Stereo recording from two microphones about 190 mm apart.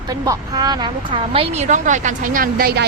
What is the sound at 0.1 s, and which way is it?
A woman's voice, 20° right (ahead or behind).